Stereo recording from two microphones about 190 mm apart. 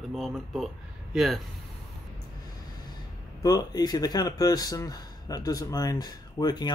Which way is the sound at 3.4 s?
20° left (ahead or behind).